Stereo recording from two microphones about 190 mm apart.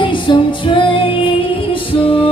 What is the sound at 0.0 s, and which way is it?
Music, 25° left (ahead or behind).